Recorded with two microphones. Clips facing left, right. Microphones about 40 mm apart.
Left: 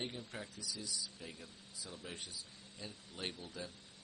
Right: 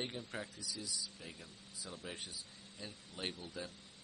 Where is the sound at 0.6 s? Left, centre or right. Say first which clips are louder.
Even; centre.